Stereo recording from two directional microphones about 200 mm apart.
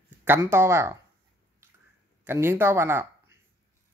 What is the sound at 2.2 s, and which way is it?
Speech, 10° right (ahead or behind).